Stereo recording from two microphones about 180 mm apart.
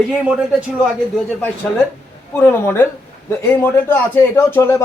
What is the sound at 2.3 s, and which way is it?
Speech, 15° left (ahead or behind).